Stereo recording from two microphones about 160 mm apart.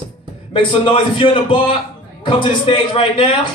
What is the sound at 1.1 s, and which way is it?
Speech, 30° left (ahead or behind).